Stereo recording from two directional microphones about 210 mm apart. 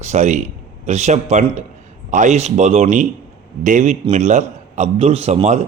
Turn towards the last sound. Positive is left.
turn(degrees=-30)  # may be behind; listen again after turning